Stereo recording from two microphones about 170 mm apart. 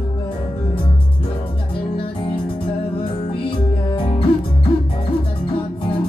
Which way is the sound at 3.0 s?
30° left (ahead or behind).